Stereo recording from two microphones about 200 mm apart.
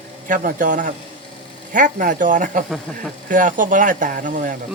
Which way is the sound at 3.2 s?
40° right (ahead or behind).